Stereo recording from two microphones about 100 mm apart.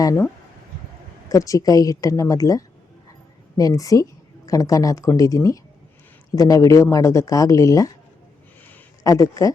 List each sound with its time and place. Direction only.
1.3 s speech: 35° left (ahead or behind)
9.0 s speech: 35° left (ahead or behind)